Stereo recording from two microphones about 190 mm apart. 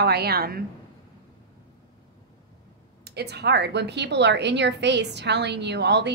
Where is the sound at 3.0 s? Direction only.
60° right (ahead or behind).